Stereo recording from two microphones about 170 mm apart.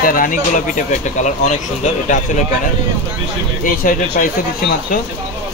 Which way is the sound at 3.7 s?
55° left (ahead or behind).